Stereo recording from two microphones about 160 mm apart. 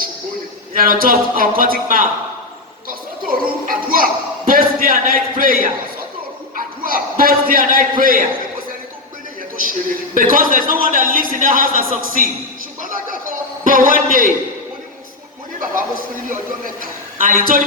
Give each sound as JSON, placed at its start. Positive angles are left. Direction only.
{"t": 0.7, "sound": "a man's voice", "side_deg": -60}
{"t": 3.2, "sound": "a sound", "side_deg": -60}
{"t": 6.6, "sound": "speech", "side_deg": -60}
{"t": 9.6, "sound": "a man's voice", "side_deg": -60}
{"t": 13.1, "sound": "a sound", "side_deg": -60}
{"t": 17.2, "sound": "a man's voice", "side_deg": -60}